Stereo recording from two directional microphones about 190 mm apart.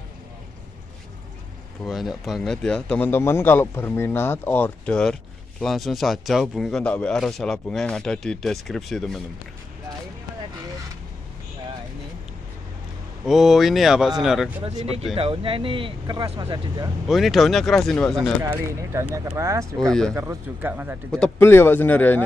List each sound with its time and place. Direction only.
1.9 s a man's voice: centre (ahead or behind)
13.2 s a man's voice: centre (ahead or behind)
14.6 s speech: 30° right (ahead or behind)
17.1 s a man's voice: centre (ahead or behind)
18.4 s speech: 15° right (ahead or behind)
19.9 s a man's voice: 5° left (ahead or behind)
20.2 s speech: 10° right (ahead or behind)
21.1 s speech: 10° left (ahead or behind)